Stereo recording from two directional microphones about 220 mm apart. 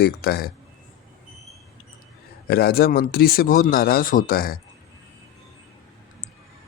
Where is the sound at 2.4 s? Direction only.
45° left (ahead or behind).